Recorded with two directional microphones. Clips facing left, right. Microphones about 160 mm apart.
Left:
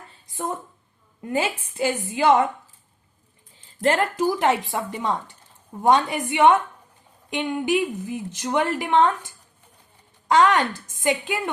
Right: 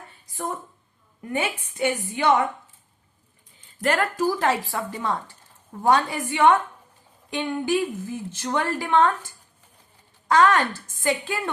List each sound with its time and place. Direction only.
1.2 s speech: 30° left (ahead or behind)
3.8 s a woman's voice: 25° left (ahead or behind)
10.2 s speech: 20° left (ahead or behind)